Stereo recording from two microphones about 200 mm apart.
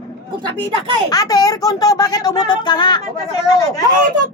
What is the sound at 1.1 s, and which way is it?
Speech, 20° left (ahead or behind).